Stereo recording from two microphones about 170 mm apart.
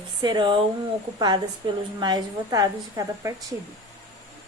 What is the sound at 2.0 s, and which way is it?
A woman's voice, 25° right (ahead or behind).